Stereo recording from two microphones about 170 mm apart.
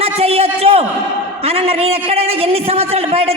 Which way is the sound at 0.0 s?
35° right (ahead or behind).